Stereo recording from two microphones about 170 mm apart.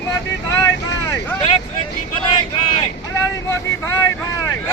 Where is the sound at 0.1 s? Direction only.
15° left (ahead or behind).